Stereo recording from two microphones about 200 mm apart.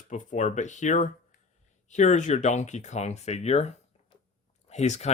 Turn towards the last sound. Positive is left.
turn(degrees=35)  # may be behind; listen again after turning